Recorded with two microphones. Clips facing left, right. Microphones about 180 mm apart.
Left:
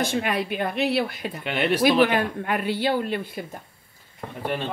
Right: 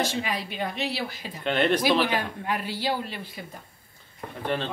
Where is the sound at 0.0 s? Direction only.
55° left (ahead or behind).